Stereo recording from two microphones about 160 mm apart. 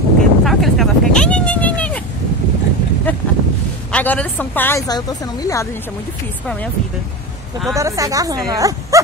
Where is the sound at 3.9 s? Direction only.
10° left (ahead or behind).